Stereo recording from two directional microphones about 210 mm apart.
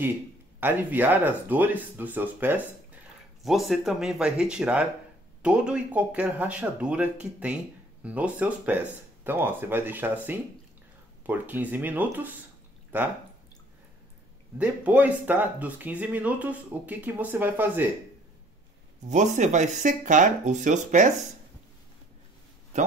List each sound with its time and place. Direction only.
0.6 s speech: 10° right (ahead or behind)
14.6 s speech: 5° right (ahead or behind)
19.0 s speech: 35° right (ahead or behind)